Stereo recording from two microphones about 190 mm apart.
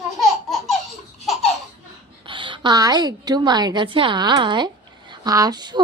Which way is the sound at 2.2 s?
25° right (ahead or behind).